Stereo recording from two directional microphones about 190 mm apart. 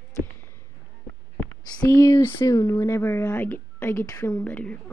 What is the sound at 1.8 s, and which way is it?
Speech, 15° left (ahead or behind).